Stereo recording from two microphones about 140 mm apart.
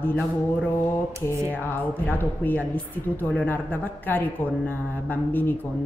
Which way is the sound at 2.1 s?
15° left (ahead or behind).